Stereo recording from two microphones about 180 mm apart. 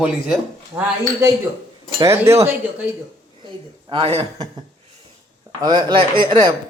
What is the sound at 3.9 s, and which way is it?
Speech, 30° right (ahead or behind).